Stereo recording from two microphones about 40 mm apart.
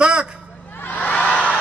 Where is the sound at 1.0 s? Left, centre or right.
Left.